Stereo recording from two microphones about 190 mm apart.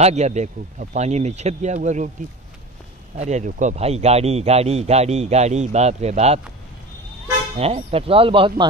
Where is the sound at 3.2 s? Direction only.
40° right (ahead or behind).